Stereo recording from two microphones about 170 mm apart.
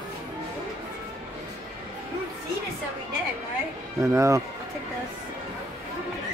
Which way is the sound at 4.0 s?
20° right (ahead or behind).